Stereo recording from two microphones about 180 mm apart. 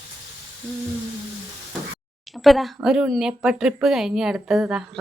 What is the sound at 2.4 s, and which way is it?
Speech, centre (ahead or behind).